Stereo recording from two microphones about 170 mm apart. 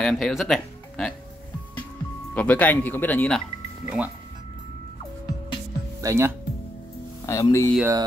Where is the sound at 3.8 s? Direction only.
10° right (ahead or behind).